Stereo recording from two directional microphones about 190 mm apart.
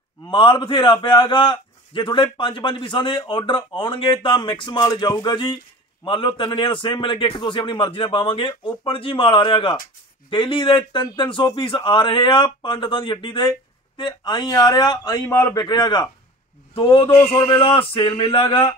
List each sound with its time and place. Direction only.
0.3 s speech: 25° left (ahead or behind)
17.1 s a man's voice: 15° left (ahead or behind)
17.5 s speech: 30° left (ahead or behind)